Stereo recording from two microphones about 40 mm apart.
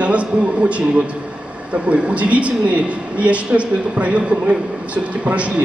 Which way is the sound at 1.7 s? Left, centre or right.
Right.